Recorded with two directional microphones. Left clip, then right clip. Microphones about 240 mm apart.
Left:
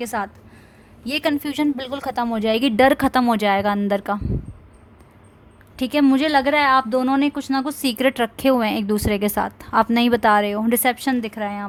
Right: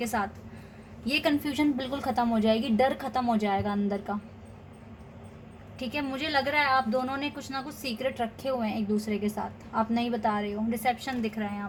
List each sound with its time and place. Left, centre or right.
0.0 s a woman's voice: left
5.8 s a woman's voice: left